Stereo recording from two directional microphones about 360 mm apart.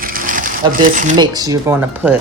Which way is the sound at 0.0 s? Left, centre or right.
Right.